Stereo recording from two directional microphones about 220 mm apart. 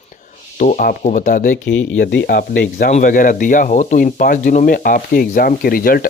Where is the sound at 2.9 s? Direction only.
35° left (ahead or behind).